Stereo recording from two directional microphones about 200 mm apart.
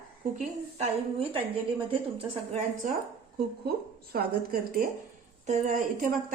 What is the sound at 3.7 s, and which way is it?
A woman's voice, 50° right (ahead or behind).